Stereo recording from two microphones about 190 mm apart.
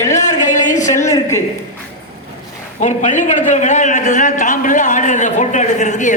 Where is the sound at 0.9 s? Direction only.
15° left (ahead or behind).